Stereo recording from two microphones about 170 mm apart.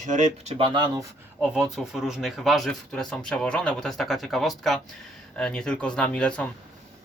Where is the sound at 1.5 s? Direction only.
5° right (ahead or behind).